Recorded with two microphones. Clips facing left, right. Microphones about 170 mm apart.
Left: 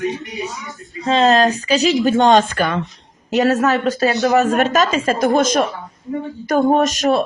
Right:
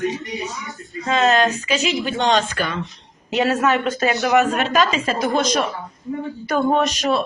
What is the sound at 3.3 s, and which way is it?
A woman's voice, 45° left (ahead or behind).